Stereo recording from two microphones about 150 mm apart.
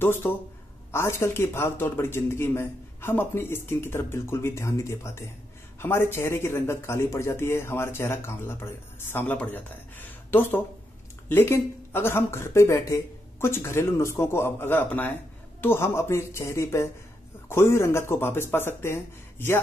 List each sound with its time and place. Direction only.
0.0 s speech: 15° left (ahead or behind)